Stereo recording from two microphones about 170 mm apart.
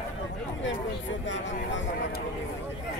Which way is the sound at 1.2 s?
90° left.